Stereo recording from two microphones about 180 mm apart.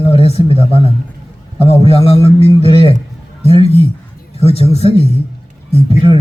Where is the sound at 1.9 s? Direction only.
35° left (ahead or behind).